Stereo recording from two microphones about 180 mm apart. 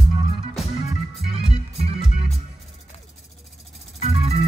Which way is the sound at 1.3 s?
30° right (ahead or behind).